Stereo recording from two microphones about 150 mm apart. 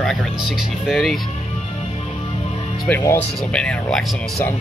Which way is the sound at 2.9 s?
15° left (ahead or behind).